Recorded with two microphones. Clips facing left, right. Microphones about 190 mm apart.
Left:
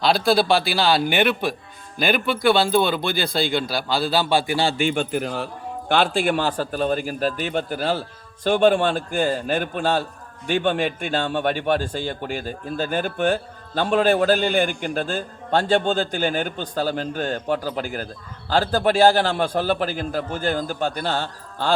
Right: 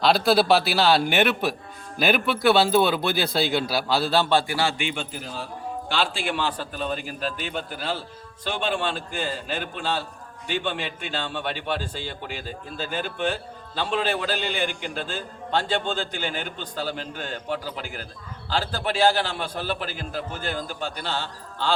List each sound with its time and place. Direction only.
0.0 s speech: centre (ahead or behind)
4.8 s a man's voice: 50° left (ahead or behind)